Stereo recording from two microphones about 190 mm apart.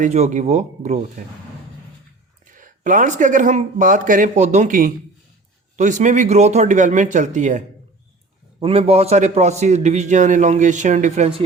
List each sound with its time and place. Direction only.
0.0 s a man's voice: 40° right (ahead or behind)
2.5 s a man's voice: 45° right (ahead or behind)
8.5 s a man's voice: 30° right (ahead or behind)